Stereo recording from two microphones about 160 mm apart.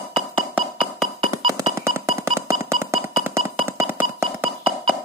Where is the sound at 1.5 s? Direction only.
20° right (ahead or behind).